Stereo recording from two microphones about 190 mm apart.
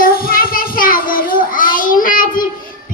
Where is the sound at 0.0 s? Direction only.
50° left (ahead or behind).